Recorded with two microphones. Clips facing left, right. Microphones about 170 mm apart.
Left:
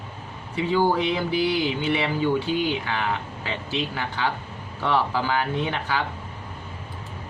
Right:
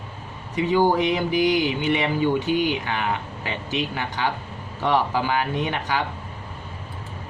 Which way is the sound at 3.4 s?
15° right (ahead or behind).